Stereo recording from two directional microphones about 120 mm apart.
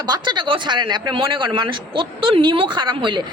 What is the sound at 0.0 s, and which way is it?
A woman's voice, 40° right (ahead or behind).